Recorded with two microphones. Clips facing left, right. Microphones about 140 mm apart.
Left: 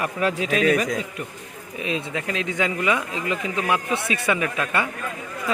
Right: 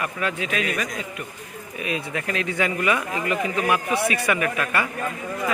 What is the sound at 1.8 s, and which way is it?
A man's voice, 25° left (ahead or behind).